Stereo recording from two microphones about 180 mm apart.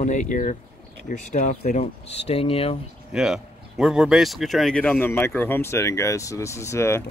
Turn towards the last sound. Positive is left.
turn(degrees=15)  # may be behind; listen again after turning